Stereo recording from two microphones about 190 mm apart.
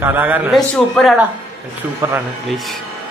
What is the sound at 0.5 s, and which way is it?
Speech, centre (ahead or behind).